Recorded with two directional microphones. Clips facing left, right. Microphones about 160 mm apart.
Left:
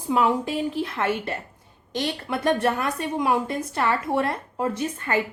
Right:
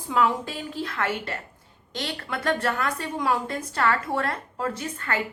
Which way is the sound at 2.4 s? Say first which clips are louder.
Left 3 dB; 20° left (ahead or behind).